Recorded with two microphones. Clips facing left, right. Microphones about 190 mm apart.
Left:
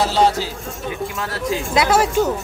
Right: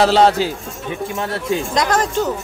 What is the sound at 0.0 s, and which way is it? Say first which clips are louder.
Speech: right 4 dB; 65° right (ahead or behind).